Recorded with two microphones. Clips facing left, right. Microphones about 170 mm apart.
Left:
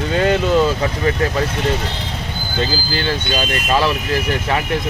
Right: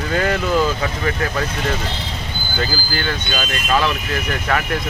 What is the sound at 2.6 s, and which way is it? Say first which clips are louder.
Speech: left 3 dB; 25° left (ahead or behind).